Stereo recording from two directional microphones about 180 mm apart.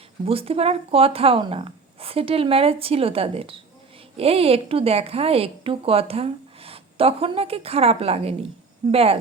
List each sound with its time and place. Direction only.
0.3 s a woman's voice: 30° right (ahead or behind)